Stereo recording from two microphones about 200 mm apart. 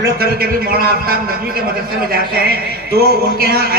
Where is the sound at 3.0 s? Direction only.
50° right (ahead or behind).